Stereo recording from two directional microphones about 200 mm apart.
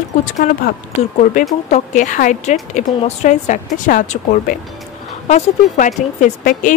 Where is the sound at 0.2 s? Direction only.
40° left (ahead or behind).